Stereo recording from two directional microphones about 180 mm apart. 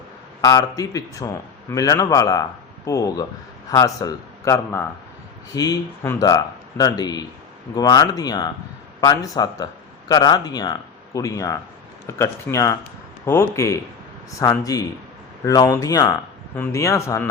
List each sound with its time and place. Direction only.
0.4 s a man's voice: 20° left (ahead or behind)